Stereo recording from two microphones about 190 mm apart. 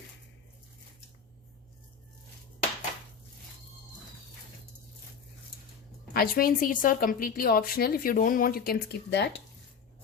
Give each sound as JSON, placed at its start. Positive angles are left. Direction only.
{"t": 6.1, "sound": "a woman's voice", "side_deg": 50}